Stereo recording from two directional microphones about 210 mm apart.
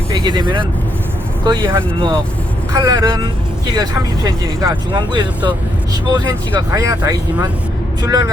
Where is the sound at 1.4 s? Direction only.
15° right (ahead or behind).